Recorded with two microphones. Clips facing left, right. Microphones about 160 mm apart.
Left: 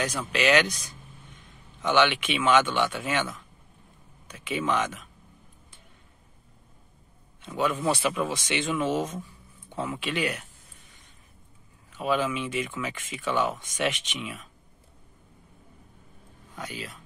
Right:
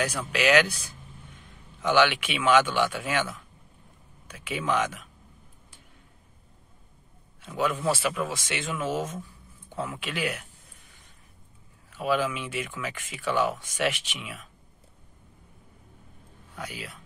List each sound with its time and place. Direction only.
0.2 s speech: 10° right (ahead or behind)
7.4 s speech: 5° right (ahead or behind)
11.9 s speech: 5° right (ahead or behind)
16.5 s speech: 5° right (ahead or behind)